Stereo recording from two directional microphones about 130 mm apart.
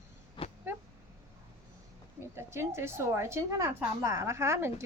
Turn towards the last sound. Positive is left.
turn(degrees=-20)  # may be behind; listen again after turning